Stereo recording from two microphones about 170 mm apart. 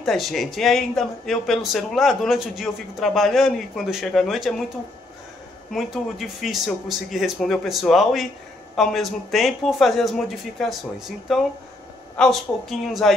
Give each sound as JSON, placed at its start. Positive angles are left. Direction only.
{"t": 0.0, "sound": "speech", "side_deg": 0}
{"t": 5.7, "sound": "speech", "side_deg": 0}